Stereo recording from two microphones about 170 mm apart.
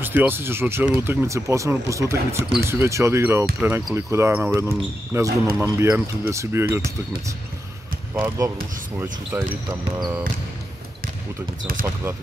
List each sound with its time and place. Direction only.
0.0 s speech: 10° right (ahead or behind)
8.9 s speech: 10° right (ahead or behind)
11.8 s speech: 15° right (ahead or behind)